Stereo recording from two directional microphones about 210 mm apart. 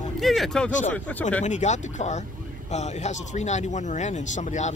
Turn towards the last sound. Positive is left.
turn(degrees=35)  # may be behind; listen again after turning